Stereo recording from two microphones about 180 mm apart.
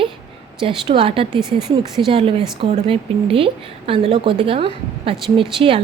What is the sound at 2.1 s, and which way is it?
A woman's voice, 30° right (ahead or behind).